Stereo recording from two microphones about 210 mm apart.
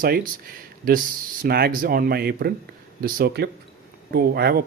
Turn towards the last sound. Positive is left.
turn(degrees=-45)  # may be behind; listen again after turning